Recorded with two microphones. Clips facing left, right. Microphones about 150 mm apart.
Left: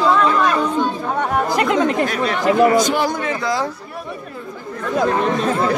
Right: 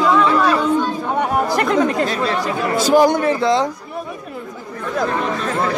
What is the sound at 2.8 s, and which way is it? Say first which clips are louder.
Speech: right 6 dB; 40° right (ahead or behind).